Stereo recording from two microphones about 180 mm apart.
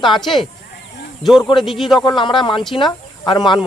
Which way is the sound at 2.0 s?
25° left (ahead or behind).